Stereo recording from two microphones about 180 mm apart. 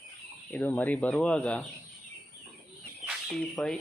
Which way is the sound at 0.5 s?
10° left (ahead or behind).